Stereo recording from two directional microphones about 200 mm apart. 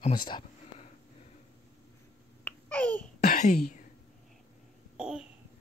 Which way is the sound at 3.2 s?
50° left (ahead or behind).